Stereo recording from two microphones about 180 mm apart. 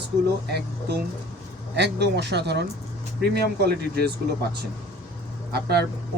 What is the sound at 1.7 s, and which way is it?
Speech, 70° right (ahead or behind).